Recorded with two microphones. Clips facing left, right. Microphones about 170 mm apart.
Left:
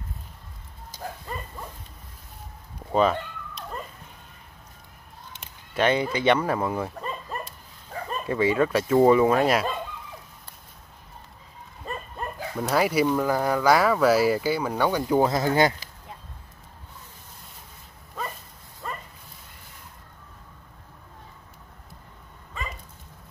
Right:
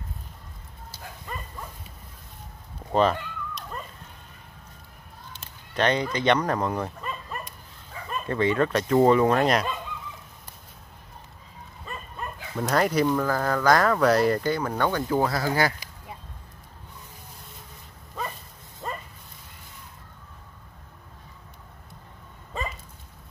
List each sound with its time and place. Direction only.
2.9 s a sound: centre (ahead or behind)
5.4 s honk: 10° left (ahead or behind)
6.1 s speech: 5° left (ahead or behind)
7.9 s bow-wow: 45° left (ahead or behind)
8.3 s speech: 10° left (ahead or behind)
11.8 s dog: 40° left (ahead or behind)
12.5 s speech: 5° left (ahead or behind)
18.8 s dog: 25° right (ahead or behind)